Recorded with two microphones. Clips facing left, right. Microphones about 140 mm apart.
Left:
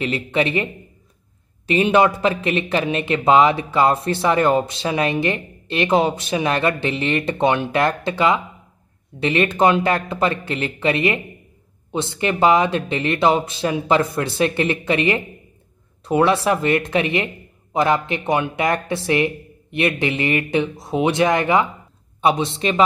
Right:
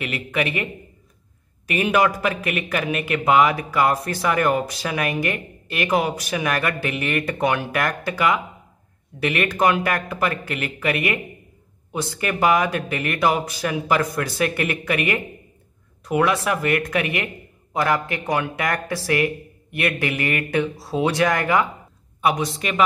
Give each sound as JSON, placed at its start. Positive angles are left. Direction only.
{"t": 0.0, "sound": "speech", "side_deg": 30}
{"t": 1.7, "sound": "speech", "side_deg": 25}